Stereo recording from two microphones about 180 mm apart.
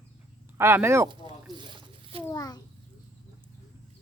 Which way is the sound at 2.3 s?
20° left (ahead or behind).